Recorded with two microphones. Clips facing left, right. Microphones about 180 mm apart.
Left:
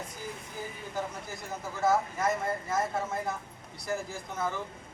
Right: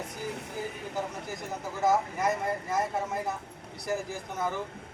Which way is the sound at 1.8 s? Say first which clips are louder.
Right 1 dB; 15° right (ahead or behind).